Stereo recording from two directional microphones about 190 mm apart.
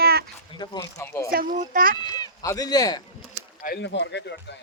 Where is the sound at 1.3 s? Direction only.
45° right (ahead or behind).